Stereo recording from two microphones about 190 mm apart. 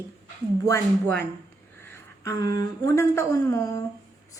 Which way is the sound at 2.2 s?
20° left (ahead or behind).